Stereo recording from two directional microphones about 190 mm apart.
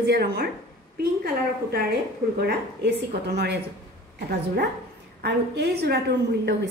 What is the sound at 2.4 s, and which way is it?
A woman's voice, 60° right (ahead or behind).